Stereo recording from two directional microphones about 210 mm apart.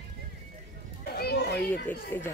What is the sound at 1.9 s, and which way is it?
Speech, 10° left (ahead or behind).